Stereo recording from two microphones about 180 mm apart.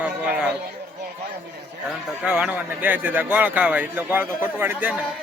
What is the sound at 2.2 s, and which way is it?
A man's voice, 5° right (ahead or behind).